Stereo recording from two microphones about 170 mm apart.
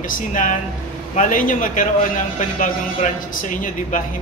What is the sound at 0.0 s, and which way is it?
Speech, 50° left (ahead or behind).